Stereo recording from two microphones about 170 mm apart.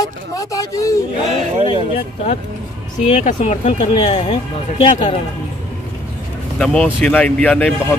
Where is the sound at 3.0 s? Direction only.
40° left (ahead or behind).